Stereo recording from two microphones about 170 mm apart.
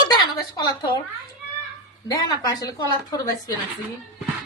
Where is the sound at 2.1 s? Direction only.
20° left (ahead or behind).